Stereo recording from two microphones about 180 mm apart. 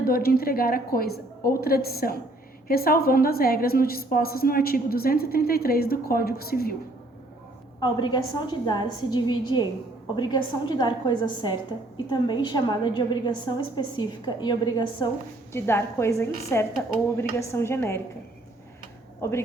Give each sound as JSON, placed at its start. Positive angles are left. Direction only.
{"t": 0.0, "sound": "a woman's voice", "side_deg": 55}
{"t": 7.8, "sound": "a woman's voice", "side_deg": 25}
{"t": 15.5, "sound": "a woman's voice", "side_deg": 15}
{"t": 19.2, "sound": "a woman's voice", "side_deg": 15}